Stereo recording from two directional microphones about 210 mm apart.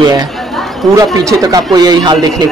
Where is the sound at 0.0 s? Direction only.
20° right (ahead or behind).